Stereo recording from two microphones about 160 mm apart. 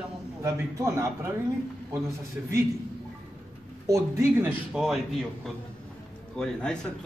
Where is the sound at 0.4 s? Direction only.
20° right (ahead or behind).